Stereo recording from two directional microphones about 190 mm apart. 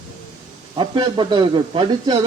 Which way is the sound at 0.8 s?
25° right (ahead or behind).